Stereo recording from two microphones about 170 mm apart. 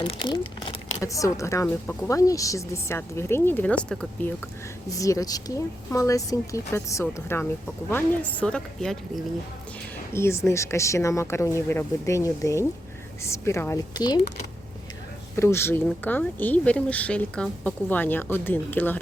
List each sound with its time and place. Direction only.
0.1 s speech: 30° left (ahead or behind); by 4.3 s 5° left (ahead or behind)
4.9 s a woman's voice: 20° left (ahead or behind); by 9.2 s 5° left (ahead or behind)
10.1 s speech: 15° left (ahead or behind)
15.4 s speech: 15° left (ahead or behind)